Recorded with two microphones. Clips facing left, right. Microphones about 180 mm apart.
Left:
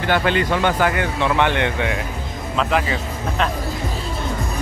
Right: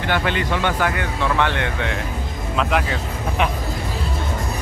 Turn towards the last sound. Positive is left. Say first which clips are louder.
# left 1 dB
turn(degrees=0)  # may be behind; listen again after turning